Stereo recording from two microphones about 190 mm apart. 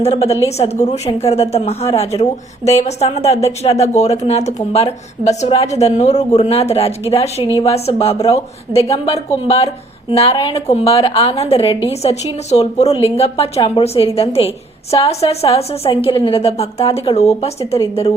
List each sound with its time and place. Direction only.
0.0 s a woman's voice: 35° left (ahead or behind)